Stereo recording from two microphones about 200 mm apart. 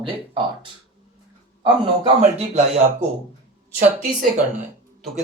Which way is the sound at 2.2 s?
35° right (ahead or behind).